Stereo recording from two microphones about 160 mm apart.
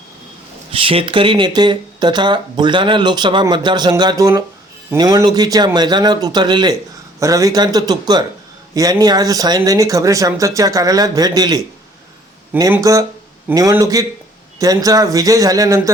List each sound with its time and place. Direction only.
0.7 s speech: 35° right (ahead or behind)
12.7 s speech: 20° right (ahead or behind)